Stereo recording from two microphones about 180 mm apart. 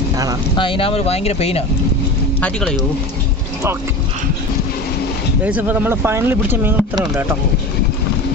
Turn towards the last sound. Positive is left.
turn(degrees=-15)  # may be behind; listen again after turning